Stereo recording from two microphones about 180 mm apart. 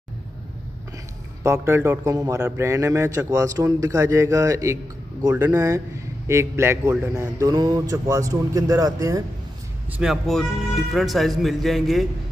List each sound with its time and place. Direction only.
1.4 s a man's voice: 15° right (ahead or behind)
9.9 s speech: centre (ahead or behind)